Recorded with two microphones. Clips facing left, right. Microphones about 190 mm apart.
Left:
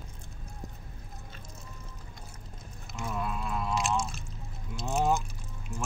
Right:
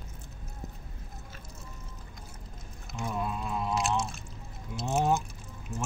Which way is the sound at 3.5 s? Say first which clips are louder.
Right 1 dB; 20° right (ahead or behind).